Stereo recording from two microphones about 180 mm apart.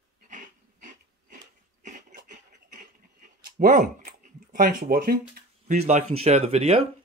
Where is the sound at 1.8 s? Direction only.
45° right (ahead or behind).